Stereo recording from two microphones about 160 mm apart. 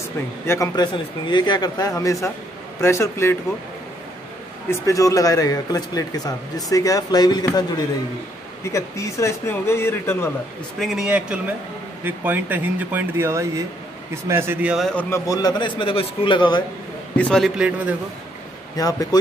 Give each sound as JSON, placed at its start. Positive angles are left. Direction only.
{"t": 0.5, "sound": "speech", "side_deg": 20}
{"t": 4.6, "sound": "speech", "side_deg": 20}
{"t": 8.6, "sound": "speech", "side_deg": 15}
{"t": 10.8, "sound": "speech", "side_deg": -5}
{"t": 14.9, "sound": "speech", "side_deg": 10}
{"t": 17.2, "sound": "a man's voice", "side_deg": 5}
{"t": 17.6, "sound": "speech", "side_deg": -10}
{"t": 18.8, "sound": "speech", "side_deg": 25}